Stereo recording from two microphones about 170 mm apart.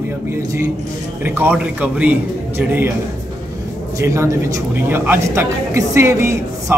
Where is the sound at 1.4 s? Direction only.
10° right (ahead or behind).